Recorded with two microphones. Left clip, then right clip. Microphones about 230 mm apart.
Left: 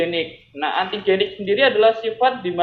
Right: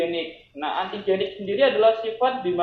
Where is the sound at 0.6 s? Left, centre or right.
Left.